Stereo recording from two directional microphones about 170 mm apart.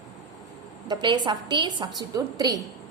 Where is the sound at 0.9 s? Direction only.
25° right (ahead or behind).